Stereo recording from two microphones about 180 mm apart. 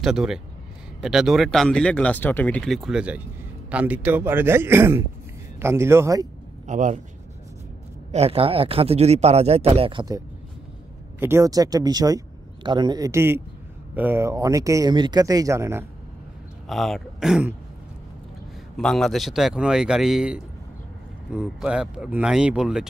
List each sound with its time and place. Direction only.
0.0 s speech: 5° right (ahead or behind)
6.7 s speech: 40° right (ahead or behind)
8.1 s speech: 35° right (ahead or behind); by 15.8 s 15° right (ahead or behind)
16.6 s a man's voice: centre (ahead or behind)
18.8 s speech: 5° left (ahead or behind)